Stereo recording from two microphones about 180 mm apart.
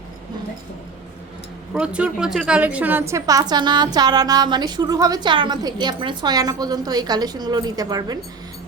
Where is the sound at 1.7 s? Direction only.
5° right (ahead or behind).